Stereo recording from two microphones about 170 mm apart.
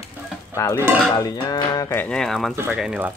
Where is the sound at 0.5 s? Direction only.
15° right (ahead or behind).